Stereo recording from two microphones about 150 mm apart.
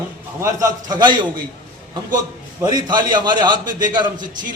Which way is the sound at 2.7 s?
30° right (ahead or behind).